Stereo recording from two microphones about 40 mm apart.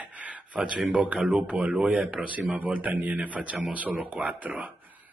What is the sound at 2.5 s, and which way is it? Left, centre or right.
Speech, right.